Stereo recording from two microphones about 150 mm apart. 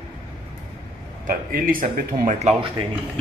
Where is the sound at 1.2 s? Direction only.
70° right (ahead or behind).